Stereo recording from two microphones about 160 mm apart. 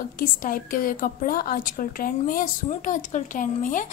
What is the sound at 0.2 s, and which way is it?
A woman's voice, 60° left (ahead or behind).